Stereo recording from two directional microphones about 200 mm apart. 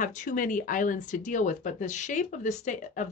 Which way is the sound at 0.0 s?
40° left (ahead or behind).